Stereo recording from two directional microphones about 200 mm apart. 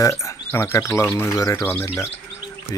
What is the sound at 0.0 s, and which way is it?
Speech, 15° left (ahead or behind).